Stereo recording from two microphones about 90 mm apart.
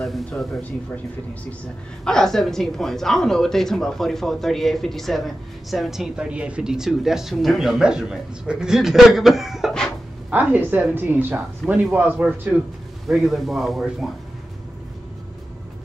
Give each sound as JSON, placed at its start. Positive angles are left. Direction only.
{"t": 0.0, "sound": "a sound", "side_deg": 5}
{"t": 2.0, "sound": "speech", "side_deg": 5}
{"t": 10.3, "sound": "a woman's voice", "side_deg": -20}
{"t": 13.1, "sound": "speech", "side_deg": 0}